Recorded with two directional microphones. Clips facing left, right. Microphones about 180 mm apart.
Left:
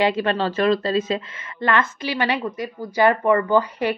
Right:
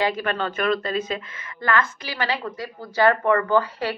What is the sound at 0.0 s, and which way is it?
A woman's voice, 25° left (ahead or behind).